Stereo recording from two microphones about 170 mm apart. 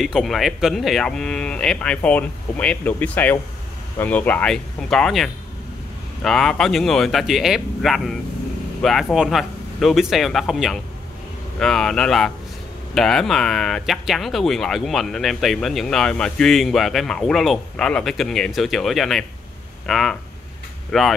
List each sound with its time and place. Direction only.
0.0 s speech: centre (ahead or behind)